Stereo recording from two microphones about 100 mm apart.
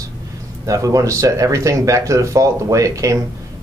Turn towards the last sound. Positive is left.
turn(degrees=-35)  # may be behind; listen again after turning